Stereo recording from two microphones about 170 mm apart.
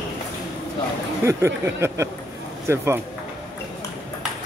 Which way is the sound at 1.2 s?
15° right (ahead or behind).